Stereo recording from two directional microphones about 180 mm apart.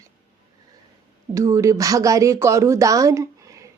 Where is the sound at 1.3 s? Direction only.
15° right (ahead or behind).